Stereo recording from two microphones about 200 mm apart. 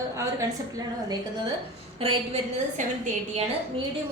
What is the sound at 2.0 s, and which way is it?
Speech, 30° right (ahead or behind).